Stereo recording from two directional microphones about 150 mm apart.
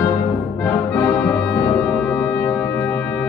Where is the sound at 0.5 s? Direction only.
5° left (ahead or behind).